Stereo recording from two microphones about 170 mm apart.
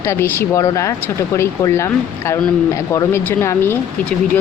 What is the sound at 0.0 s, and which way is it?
Speech, 15° left (ahead or behind).